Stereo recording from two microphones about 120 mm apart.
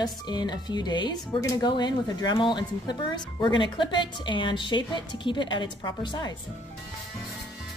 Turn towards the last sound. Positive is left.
turn(degrees=35)  # may be behind; listen again after turning